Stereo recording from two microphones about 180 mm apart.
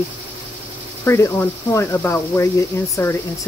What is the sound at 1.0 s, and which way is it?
Speech, 15° left (ahead or behind).